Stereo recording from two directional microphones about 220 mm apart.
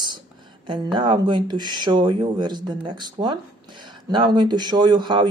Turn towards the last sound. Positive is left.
turn(degrees=-20)  # may be behind; listen again after turning